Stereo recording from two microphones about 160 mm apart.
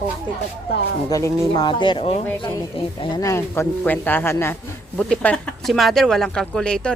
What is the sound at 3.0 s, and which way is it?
Speech, 20° left (ahead or behind).